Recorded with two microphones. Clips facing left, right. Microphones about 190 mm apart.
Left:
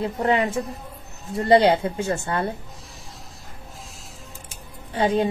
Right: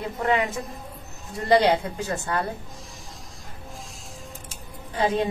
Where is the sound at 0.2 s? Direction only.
25° left (ahead or behind).